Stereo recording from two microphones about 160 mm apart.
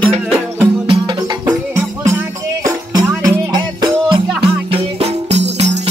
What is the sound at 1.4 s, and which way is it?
Music, 15° right (ahead or behind).